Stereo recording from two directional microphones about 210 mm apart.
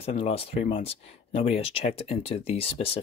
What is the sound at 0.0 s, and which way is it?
Speech, 30° left (ahead or behind).